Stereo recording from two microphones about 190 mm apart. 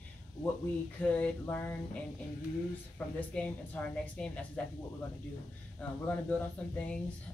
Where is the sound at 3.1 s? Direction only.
5° left (ahead or behind).